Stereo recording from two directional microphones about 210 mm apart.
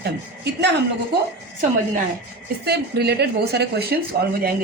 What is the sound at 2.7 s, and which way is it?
A woman's voice, 50° right (ahead or behind).